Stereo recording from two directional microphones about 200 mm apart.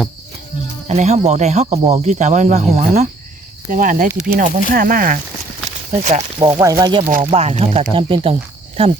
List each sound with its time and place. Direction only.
0.9 s speech: 35° right (ahead or behind)
5.9 s speech: 35° right (ahead or behind)
6.4 s speech: 15° right (ahead or behind)
7.3 s speech: 30° right (ahead or behind)
7.9 s cricket: 25° right (ahead or behind)